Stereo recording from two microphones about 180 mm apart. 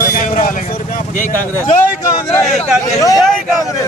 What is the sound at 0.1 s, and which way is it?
Vehicle, 45° left (ahead or behind).